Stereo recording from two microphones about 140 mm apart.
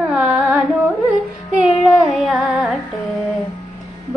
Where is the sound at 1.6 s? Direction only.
35° left (ahead or behind).